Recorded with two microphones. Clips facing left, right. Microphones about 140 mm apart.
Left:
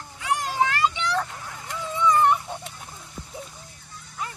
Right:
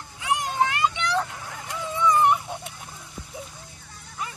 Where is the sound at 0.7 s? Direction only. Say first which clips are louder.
Even; 15° right (ahead or behind).